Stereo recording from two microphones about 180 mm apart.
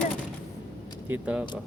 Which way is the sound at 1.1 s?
5° right (ahead or behind).